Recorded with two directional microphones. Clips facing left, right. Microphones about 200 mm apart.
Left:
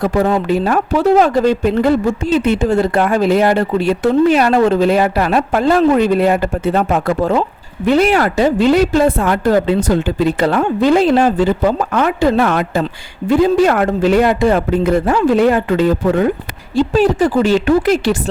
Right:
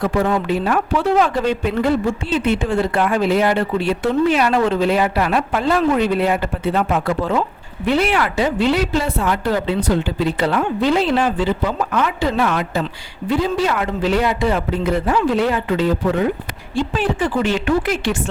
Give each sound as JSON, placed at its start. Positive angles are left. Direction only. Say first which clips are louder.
{"t": 0.0, "sound": "speech", "louder": "left 4 dB", "side_deg": 40}